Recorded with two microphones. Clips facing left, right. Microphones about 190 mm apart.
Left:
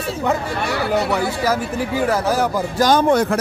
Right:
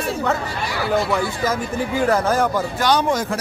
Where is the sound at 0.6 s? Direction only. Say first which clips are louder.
Left 1 dB; 65° left (ahead or behind).